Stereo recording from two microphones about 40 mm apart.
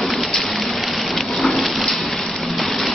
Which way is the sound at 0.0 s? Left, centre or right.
Centre.